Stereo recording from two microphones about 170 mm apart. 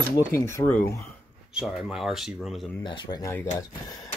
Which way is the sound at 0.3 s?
15° left (ahead or behind).